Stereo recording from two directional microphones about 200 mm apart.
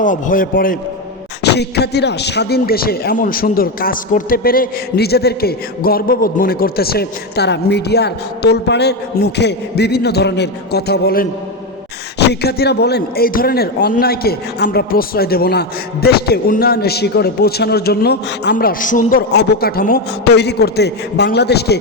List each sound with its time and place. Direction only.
0.0 s a man's voice: 40° left (ahead or behind)
1.5 s a man's voice: 55° left (ahead or behind)
12.3 s a man's voice: 55° left (ahead or behind)
19.3 s a man's voice: 55° left (ahead or behind)